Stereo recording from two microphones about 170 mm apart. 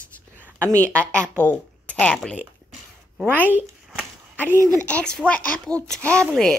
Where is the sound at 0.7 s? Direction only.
5° left (ahead or behind).